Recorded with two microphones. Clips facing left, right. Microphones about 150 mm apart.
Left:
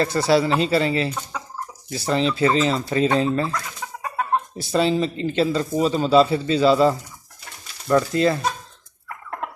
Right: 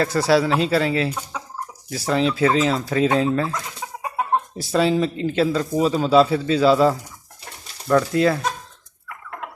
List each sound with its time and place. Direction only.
0.0 s speech: 5° right (ahead or behind)
3.5 s chicken: 20° right (ahead or behind)
4.5 s speech: 5° right (ahead or behind)